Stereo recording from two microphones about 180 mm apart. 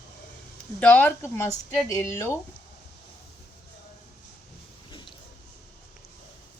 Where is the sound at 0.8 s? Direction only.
10° left (ahead or behind).